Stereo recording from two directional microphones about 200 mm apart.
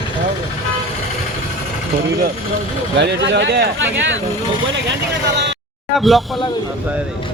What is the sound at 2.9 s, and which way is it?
Speech, 60° right (ahead or behind).